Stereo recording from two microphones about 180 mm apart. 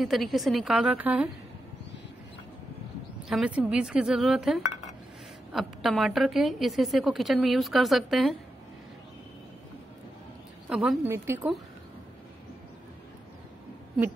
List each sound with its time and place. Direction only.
0.0 s a woman's voice: centre (ahead or behind)
3.3 s a woman's voice: 5° right (ahead or behind)
10.7 s a woman's voice: 5° right (ahead or behind)